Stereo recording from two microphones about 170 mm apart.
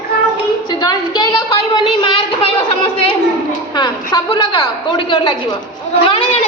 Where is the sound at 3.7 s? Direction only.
25° left (ahead or behind).